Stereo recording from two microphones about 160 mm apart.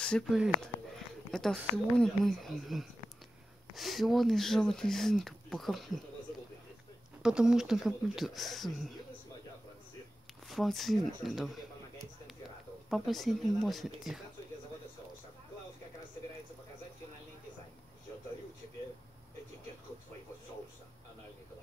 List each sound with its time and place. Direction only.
0.0 s speech: 5° left (ahead or behind)
7.2 s speech: 5° right (ahead or behind)
10.5 s speech: centre (ahead or behind)
12.9 s speech: centre (ahead or behind)